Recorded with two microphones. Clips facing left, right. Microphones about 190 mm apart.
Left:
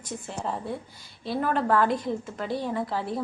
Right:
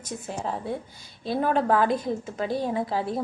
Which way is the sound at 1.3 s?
20° right (ahead or behind).